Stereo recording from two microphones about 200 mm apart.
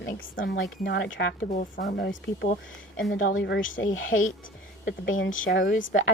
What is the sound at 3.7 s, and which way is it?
Speech, 80° left.